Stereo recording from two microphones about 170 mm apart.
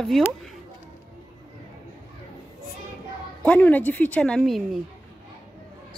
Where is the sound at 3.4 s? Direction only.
10° left (ahead or behind).